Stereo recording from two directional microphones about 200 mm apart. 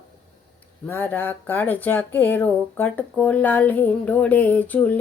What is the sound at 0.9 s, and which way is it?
Speech, 10° left (ahead or behind).